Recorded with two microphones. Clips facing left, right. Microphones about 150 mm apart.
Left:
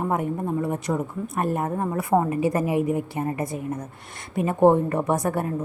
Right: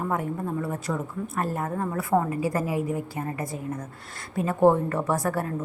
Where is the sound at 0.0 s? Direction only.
20° left (ahead or behind).